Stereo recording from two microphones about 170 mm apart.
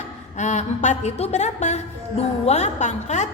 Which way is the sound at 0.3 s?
45° left (ahead or behind).